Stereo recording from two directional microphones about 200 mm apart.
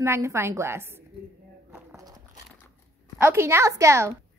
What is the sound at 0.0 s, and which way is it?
A woman's voice, 15° right (ahead or behind).